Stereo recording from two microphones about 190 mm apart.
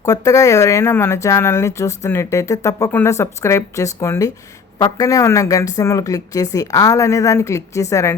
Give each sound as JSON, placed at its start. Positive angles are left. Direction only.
{"t": 0.0, "sound": "speech", "side_deg": 15}